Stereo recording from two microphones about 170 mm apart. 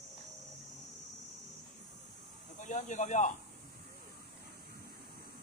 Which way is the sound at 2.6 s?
45° left (ahead or behind).